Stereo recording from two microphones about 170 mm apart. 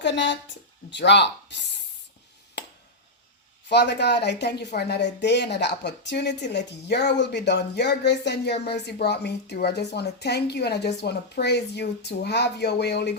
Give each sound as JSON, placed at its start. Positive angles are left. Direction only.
{"t": 0.0, "sound": "a woman's voice", "side_deg": 90}
{"t": 3.7, "sound": "speech", "side_deg": 85}